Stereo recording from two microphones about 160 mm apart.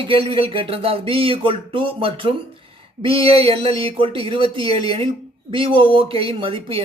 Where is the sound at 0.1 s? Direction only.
35° right (ahead or behind).